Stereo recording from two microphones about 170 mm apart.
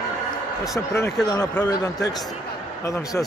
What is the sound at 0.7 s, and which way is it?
A man's voice, 15° left (ahead or behind).